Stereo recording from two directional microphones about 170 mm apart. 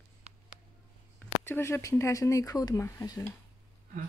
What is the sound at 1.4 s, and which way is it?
Speech, 15° left (ahead or behind).